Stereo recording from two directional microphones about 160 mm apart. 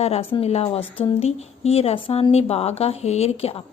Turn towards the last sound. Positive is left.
turn(degrees=40)  # may be behind; listen again after turning